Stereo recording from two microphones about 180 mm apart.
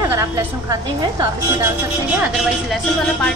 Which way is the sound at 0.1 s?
20° right (ahead or behind).